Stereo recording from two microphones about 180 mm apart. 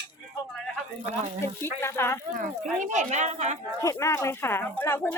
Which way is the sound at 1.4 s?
15° left (ahead or behind).